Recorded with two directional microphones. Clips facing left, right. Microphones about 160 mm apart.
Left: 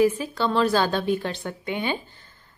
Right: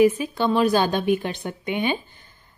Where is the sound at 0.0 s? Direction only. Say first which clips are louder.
Right 3 dB; 15° right (ahead or behind).